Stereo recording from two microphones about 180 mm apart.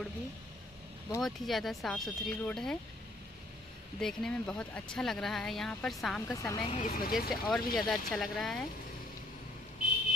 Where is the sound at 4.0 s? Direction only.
5° left (ahead or behind).